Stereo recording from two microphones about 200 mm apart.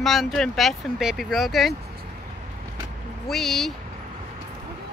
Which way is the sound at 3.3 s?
Centre (ahead or behind).